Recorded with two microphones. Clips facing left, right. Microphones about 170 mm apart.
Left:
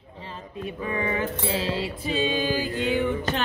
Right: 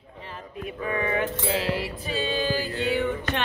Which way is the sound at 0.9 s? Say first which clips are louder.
Right 1 dB; 25° left (ahead or behind).